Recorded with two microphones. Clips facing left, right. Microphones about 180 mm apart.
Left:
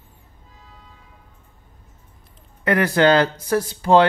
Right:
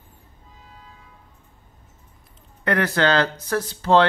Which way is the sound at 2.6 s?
10° left (ahead or behind).